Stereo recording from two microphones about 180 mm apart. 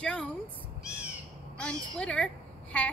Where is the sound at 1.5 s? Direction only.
5° left (ahead or behind).